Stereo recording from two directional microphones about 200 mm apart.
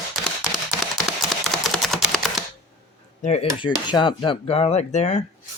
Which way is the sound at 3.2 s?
35° left (ahead or behind).